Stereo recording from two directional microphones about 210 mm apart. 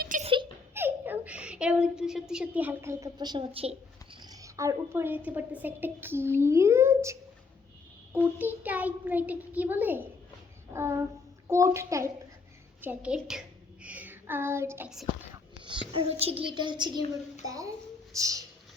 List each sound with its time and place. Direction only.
0.0 s giggle: 40° right (ahead or behind)
0.7 s a child's voice: 10° right (ahead or behind)
15.6 s a child's voice: 25° right (ahead or behind)
18.1 s a sound: 15° right (ahead or behind)